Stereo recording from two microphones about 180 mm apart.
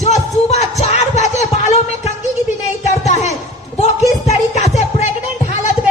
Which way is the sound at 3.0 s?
40° left (ahead or behind).